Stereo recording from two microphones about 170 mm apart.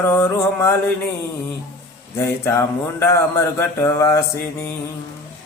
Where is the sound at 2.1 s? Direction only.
15° left (ahead or behind).